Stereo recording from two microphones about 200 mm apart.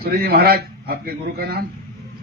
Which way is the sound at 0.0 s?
50° right (ahead or behind).